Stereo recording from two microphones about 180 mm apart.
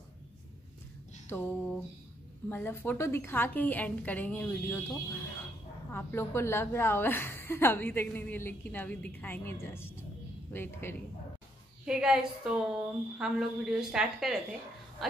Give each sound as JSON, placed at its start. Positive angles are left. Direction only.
{"t": 1.3, "sound": "a woman's voice", "side_deg": 10}
{"t": 11.8, "sound": "a woman's voice", "side_deg": -5}